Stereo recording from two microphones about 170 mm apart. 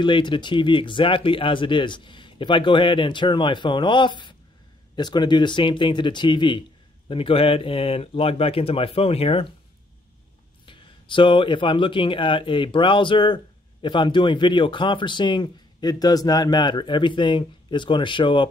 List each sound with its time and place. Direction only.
0.0 s a man's voice: 30° left (ahead or behind)
10.6 s speech: 30° left (ahead or behind)